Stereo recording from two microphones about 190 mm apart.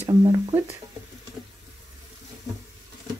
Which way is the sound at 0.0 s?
20° right (ahead or behind).